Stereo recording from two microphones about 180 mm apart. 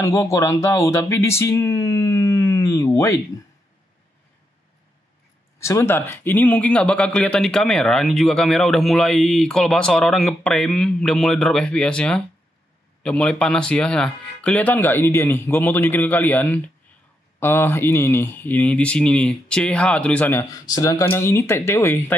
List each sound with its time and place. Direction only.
0.0 s speech: 20° left (ahead or behind)
5.6 s a man's voice: 15° left (ahead or behind)